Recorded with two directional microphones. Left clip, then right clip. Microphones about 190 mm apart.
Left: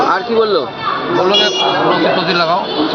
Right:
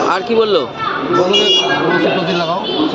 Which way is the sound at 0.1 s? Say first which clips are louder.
Even; 20° right (ahead or behind).